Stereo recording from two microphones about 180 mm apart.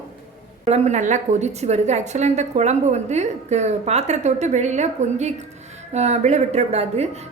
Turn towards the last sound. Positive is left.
turn(degrees=-35)  # may be behind; listen again after turning